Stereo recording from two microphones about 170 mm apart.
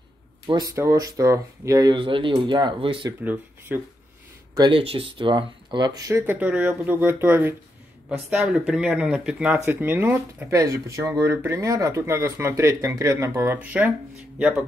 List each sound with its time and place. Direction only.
0.5 s speech: 20° right (ahead or behind)
3.3 s speech: 10° right (ahead or behind)
4.6 s speech: 30° right (ahead or behind); by 13.9 s 10° right (ahead or behind)